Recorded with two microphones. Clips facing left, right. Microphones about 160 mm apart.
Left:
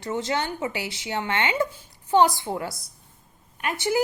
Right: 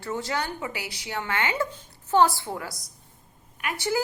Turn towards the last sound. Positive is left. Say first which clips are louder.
# left 3 dB
turn(degrees=20)  # may be behind; listen again after turning